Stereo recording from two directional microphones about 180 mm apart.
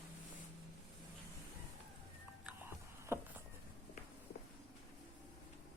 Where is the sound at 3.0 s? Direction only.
15° right (ahead or behind).